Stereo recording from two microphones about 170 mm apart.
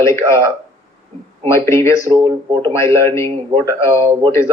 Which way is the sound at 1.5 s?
15° left (ahead or behind).